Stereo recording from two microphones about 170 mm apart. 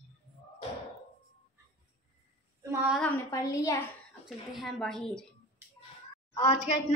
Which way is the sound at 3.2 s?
20° left (ahead or behind).